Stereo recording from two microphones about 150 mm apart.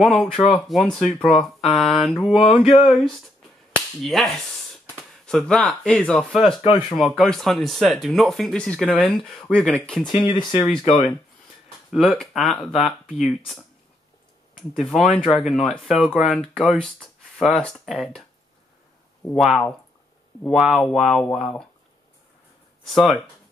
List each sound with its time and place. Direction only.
0.0 s speech: centre (ahead or behind)
6.6 s speech: 35° left (ahead or behind)
7.0 s speech: centre (ahead or behind)
10.2 s speech: 30° left (ahead or behind)
11.9 s speech: centre (ahead or behind)
14.8 s speech: centre (ahead or behind)
19.3 s speech: centre (ahead or behind)